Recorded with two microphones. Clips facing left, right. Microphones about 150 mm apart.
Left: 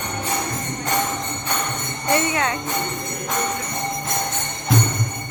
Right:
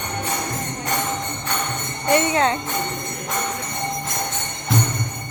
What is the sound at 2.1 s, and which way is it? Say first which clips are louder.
Speech: right 4 dB; 30° right (ahead or behind).